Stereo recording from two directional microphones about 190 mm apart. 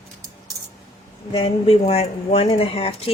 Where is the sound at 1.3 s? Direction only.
30° left (ahead or behind).